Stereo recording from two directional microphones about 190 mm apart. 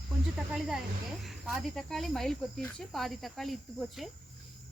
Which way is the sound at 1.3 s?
Centre (ahead or behind).